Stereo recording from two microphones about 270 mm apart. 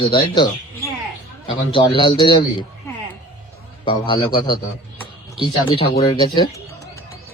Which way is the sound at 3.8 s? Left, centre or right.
Centre.